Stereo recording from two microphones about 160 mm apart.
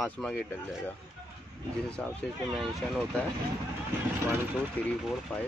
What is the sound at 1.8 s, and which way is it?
Speech, 5° left (ahead or behind).